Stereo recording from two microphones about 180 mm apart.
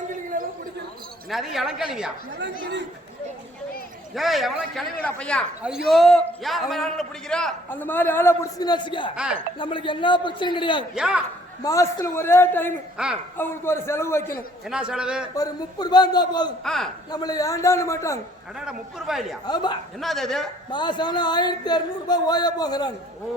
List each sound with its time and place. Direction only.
0.3 s a sound: 45° right (ahead or behind)
1.3 s a woman's voice: centre (ahead or behind)
4.1 s a woman's voice: centre (ahead or behind); by 9.1 s 25° left (ahead or behind)
9.1 s a woman's voice: 5° right (ahead or behind)
9.6 s speech: 25° left (ahead or behind)
10.9 s a woman's voice: 5° right (ahead or behind)
11.6 s a man's voice: 20° left (ahead or behind)
14.7 s a woman's voice: 5° right (ahead or behind)
15.4 s speech: 25° left (ahead or behind)
16.6 s a woman's voice: centre (ahead or behind)
17.1 s a man's voice: 20° left (ahead or behind)
18.6 s a woman's voice: centre (ahead or behind)
20.7 s speech: 25° left (ahead or behind)